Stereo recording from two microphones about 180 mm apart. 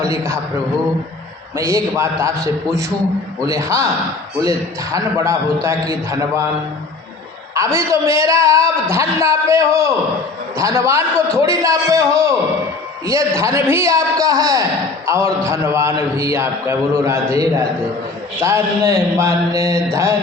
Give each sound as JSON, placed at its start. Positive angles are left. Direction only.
{"t": 1.5, "sound": "a man's voice", "side_deg": -15}
{"t": 3.4, "sound": "a man's voice", "side_deg": -15}
{"t": 7.5, "sound": "a man's voice", "side_deg": -15}